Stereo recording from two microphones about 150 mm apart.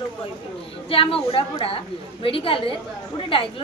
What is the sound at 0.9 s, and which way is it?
A woman's voice, 40° left (ahead or behind).